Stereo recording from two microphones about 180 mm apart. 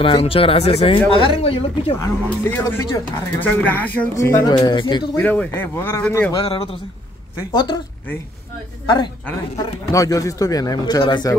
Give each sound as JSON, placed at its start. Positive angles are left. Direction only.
{"t": 0.0, "sound": "speech", "side_deg": 30}
{"t": 2.0, "sound": "speech", "side_deg": 10}
{"t": 4.6, "sound": "speech", "side_deg": 25}
{"t": 5.1, "sound": "speech", "side_deg": 10}
{"t": 6.3, "sound": "speech", "side_deg": 30}
{"t": 8.8, "sound": "speech", "side_deg": 25}